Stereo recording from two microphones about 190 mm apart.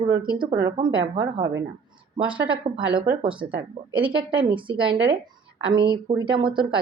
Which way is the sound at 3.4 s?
65° right (ahead or behind).